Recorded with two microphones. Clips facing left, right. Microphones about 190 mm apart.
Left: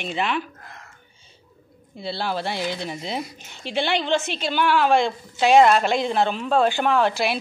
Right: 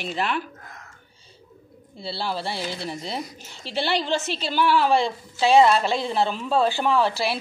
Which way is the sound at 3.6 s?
35° right (ahead or behind).